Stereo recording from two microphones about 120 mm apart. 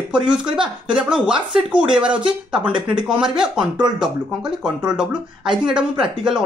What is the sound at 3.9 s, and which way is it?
Speech, 5° right (ahead or behind).